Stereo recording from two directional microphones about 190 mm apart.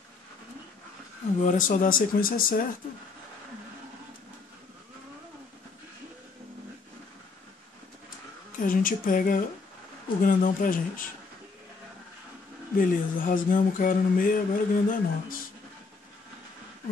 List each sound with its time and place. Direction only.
1.4 s speech: 40° left (ahead or behind)
8.5 s speech: 45° left (ahead or behind)
12.7 s speech: 45° left (ahead or behind)